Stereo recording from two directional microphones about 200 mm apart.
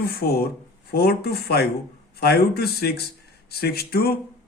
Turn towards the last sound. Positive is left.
turn(degrees=50)  # may be behind; listen again after turning